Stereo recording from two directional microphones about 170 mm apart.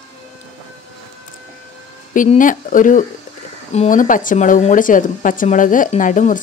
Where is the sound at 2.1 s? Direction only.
50° left (ahead or behind).